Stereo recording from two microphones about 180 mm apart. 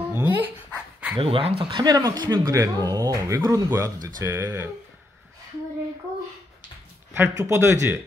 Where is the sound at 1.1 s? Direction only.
30° right (ahead or behind); by 4.6 s 10° right (ahead or behind).